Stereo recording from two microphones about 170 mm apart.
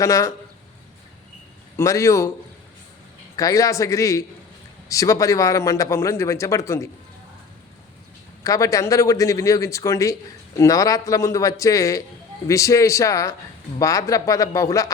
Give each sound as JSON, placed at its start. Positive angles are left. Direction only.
{"t": 0.0, "sound": "a man's voice", "side_deg": 20}
{"t": 1.7, "sound": "a man's voice", "side_deg": 15}
{"t": 3.3, "sound": "a man's voice", "side_deg": 20}
{"t": 8.4, "sound": "speech", "side_deg": 20}